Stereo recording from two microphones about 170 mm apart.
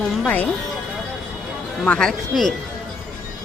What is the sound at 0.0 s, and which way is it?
Speech, 5° left (ahead or behind).